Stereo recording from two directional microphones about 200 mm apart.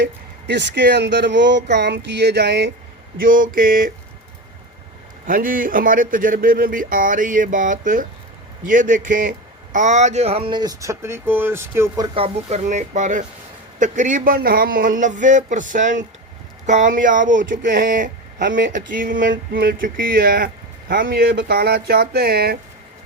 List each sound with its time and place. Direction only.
0.0 s speech: 55° right (ahead or behind)
3.2 s speech: 45° right (ahead or behind)
5.2 s speech: 45° right (ahead or behind)